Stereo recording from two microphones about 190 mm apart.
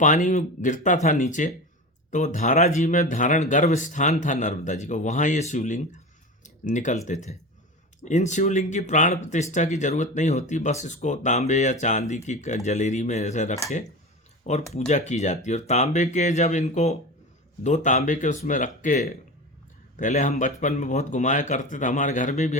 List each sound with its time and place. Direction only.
0.0 s speech: 40° left (ahead or behind)